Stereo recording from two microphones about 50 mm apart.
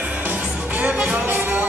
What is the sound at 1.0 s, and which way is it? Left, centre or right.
Music, right.